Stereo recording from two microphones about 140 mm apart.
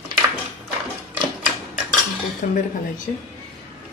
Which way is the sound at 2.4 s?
70° left (ahead or behind).